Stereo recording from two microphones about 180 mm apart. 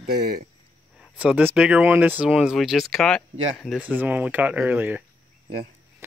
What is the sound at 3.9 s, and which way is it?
Speech, 10° right (ahead or behind).